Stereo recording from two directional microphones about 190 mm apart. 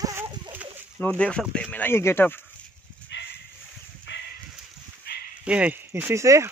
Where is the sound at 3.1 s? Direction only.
70° left (ahead or behind).